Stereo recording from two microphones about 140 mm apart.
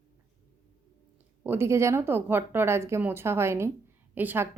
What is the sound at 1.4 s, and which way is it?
A woman's voice, 15° right (ahead or behind).